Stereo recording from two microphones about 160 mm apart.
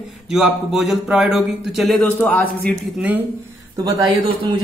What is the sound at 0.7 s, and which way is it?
A man's voice, 5° right (ahead or behind).